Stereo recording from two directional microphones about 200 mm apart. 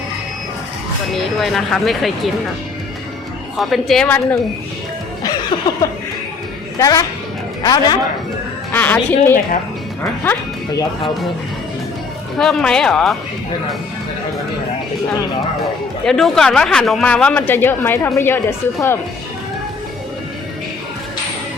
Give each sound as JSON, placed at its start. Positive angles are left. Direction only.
{"t": 1.1, "sound": "speech", "side_deg": 0}
{"t": 3.6, "sound": "speech", "side_deg": 0}
{"t": 5.2, "sound": "music", "side_deg": 20}
{"t": 6.7, "sound": "a woman's voice", "side_deg": 15}
{"t": 8.7, "sound": "a woman's voice", "side_deg": 10}
{"t": 12.4, "sound": "speech", "side_deg": 5}
{"t": 16.0, "sound": "speech", "side_deg": 0}